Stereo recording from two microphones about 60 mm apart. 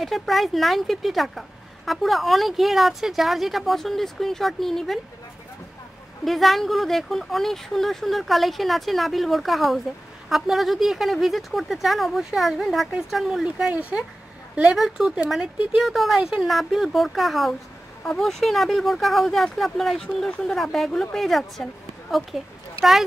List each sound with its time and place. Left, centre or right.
0.0 s speech: centre
6.2 s speech: centre
13.7 s a woman's voice: right
15.2 s speech: centre
16.2 s speech: centre
16.4 s speech: centre